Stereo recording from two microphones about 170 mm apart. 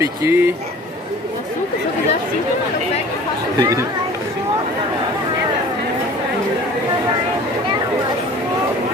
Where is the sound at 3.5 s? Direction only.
20° right (ahead or behind).